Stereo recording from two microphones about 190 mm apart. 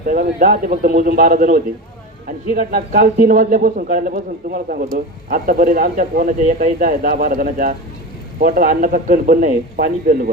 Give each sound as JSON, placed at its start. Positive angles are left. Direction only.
{"t": 0.0, "sound": "speech", "side_deg": -50}